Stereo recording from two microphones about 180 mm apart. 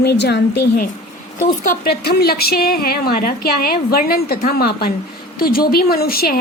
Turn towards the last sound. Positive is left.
turn(degrees=55)  # may be behind; listen again after turning